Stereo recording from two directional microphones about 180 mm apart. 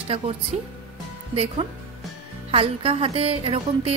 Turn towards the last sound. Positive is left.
turn(degrees=-30)  # may be behind; listen again after turning